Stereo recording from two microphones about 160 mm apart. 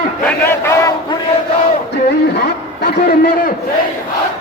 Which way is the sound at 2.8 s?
65° left (ahead or behind).